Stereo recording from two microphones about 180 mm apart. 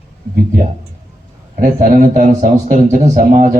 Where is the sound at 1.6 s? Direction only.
45° right (ahead or behind).